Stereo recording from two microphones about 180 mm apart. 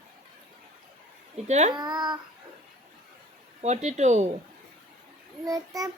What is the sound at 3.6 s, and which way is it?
Speech, 40° right (ahead or behind).